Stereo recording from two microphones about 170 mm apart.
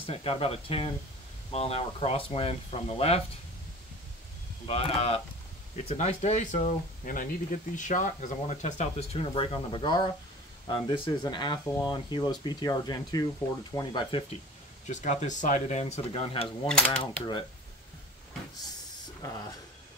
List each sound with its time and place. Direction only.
0.0 s speech: 35° left (ahead or behind)
4.6 s speech: 35° left (ahead or behind)
14.9 s speech: 45° left (ahead or behind)
16.6 s mechanisms: 5° left (ahead or behind)
17.0 s speech: 30° left (ahead or behind)